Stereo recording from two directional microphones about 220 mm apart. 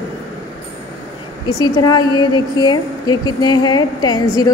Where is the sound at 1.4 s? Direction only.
15° left (ahead or behind).